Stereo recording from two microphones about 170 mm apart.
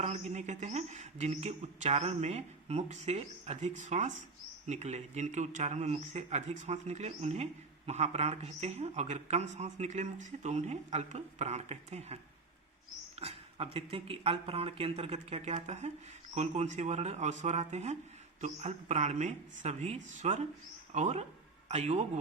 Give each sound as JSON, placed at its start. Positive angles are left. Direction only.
{"t": 0.0, "sound": "a man's voice", "side_deg": -45}